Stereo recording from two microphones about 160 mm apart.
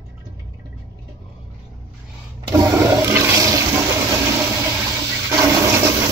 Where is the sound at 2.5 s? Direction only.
20° right (ahead or behind).